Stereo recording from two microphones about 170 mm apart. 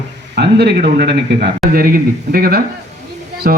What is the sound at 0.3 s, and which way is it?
A man's voice, 75° right (ahead or behind).